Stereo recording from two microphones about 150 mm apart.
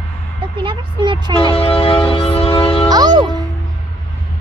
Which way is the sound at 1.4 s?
35° left (ahead or behind).